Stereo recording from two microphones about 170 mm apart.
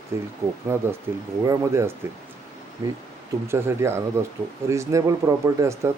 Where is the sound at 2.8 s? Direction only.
25° right (ahead or behind).